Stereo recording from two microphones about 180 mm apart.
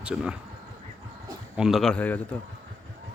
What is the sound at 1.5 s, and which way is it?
Speech, centre (ahead or behind).